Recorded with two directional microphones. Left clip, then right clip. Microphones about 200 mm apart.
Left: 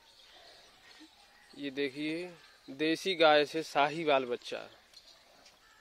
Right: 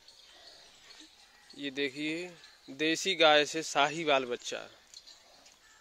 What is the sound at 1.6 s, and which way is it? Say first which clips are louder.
Speech: right 1 dB; centre (ahead or behind).